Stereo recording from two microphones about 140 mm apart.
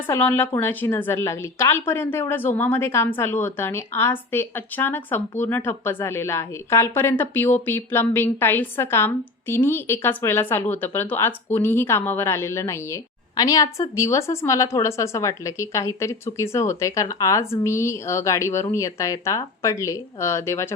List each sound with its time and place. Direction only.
0.1 s a woman's voice: 15° left (ahead or behind)